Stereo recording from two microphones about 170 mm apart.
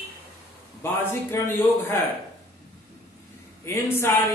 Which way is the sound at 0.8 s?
15° left (ahead or behind).